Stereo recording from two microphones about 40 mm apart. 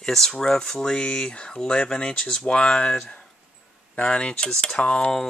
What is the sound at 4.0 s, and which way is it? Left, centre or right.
Speech, left.